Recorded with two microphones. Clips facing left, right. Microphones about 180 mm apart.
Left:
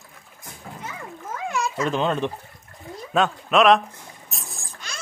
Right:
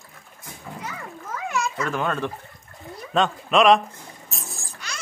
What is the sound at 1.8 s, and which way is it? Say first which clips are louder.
Speech: left 6 dB; 20° left (ahead or behind).